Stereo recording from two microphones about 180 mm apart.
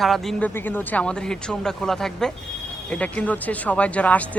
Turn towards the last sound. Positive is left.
turn(degrees=10)  # may be behind; listen again after turning